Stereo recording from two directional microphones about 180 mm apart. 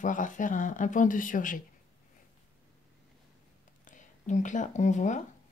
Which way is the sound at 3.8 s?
45° left (ahead or behind).